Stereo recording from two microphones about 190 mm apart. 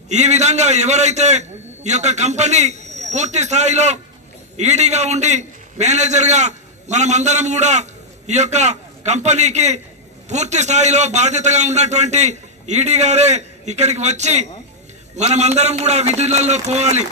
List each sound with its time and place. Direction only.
0.1 s a man's voice: 35° right (ahead or behind)